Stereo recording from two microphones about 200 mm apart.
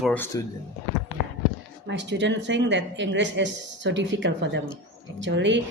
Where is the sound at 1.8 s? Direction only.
65° right (ahead or behind).